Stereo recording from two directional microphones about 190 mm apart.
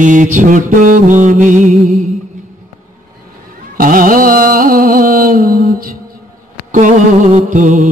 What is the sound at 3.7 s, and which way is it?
Music, 45° right (ahead or behind).